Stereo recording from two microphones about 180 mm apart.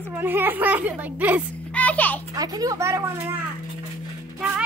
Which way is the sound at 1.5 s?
10° left (ahead or behind).